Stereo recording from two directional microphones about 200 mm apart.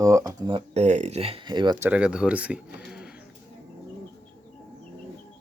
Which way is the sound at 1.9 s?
5° right (ahead or behind).